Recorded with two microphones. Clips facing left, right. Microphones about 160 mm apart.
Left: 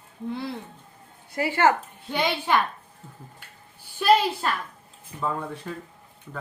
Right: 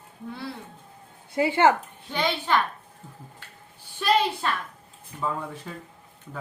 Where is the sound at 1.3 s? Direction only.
20° right (ahead or behind).